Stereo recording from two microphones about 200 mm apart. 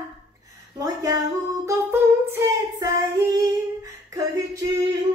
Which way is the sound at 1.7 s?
15° right (ahead or behind).